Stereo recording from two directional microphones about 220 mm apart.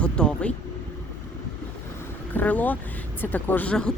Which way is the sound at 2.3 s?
5° left (ahead or behind).